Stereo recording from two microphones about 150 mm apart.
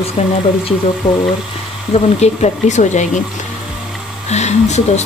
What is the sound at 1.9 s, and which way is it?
Speech, 45° left (ahead or behind).